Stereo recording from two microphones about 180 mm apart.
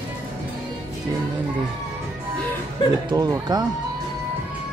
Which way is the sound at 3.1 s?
20° right (ahead or behind).